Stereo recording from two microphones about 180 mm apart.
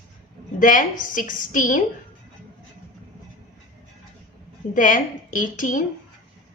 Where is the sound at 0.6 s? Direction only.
45° left (ahead or behind).